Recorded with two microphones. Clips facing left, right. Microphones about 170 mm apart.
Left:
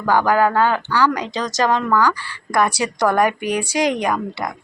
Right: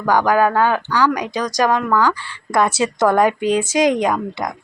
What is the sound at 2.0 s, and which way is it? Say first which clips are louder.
Speech: right 1 dB; 25° right (ahead or behind).